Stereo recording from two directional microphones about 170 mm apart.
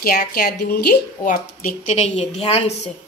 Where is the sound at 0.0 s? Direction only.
65° left (ahead or behind).